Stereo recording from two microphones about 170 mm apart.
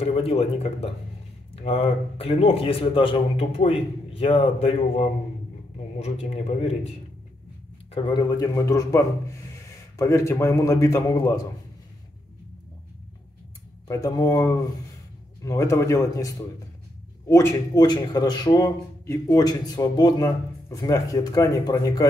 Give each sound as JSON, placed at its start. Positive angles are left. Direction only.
{"t": 0.0, "sound": "a man's voice", "side_deg": 35}
{"t": 8.0, "sound": "a man's voice", "side_deg": 30}
{"t": 8.4, "sound": "a man's voice", "side_deg": 20}
{"t": 13.8, "sound": "a man's voice", "side_deg": 20}